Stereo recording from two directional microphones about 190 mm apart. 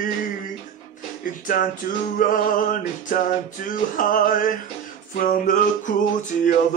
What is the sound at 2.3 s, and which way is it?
Male singing, 45° left (ahead or behind).